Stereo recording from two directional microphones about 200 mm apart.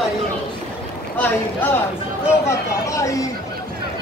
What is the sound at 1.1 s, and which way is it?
Speech, 10° left (ahead or behind).